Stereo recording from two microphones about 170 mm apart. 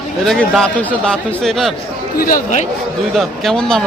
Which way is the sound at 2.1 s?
55° left (ahead or behind).